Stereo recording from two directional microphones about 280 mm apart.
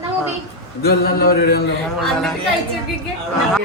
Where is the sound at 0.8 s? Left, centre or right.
Left.